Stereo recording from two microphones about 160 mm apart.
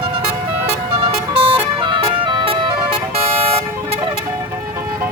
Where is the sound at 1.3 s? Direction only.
35° right (ahead or behind).